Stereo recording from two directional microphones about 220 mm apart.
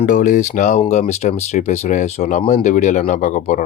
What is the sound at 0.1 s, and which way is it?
Speech, 35° left (ahead or behind).